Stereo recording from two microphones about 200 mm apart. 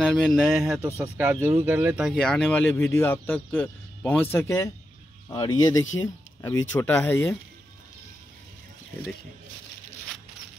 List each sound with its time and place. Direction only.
0.0 s speech: centre (ahead or behind)